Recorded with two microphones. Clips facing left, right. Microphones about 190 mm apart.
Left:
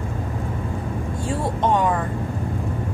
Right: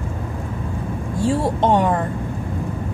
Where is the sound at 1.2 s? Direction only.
30° right (ahead or behind).